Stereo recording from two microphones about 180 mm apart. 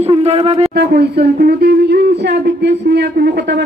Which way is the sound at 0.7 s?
65° right (ahead or behind).